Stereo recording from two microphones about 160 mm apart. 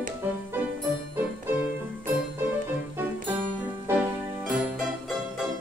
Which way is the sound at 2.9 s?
15° right (ahead or behind).